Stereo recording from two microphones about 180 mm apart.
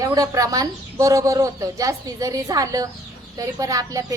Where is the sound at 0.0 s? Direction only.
20° right (ahead or behind).